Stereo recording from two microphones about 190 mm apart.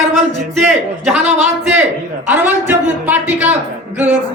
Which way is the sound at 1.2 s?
35° right (ahead or behind).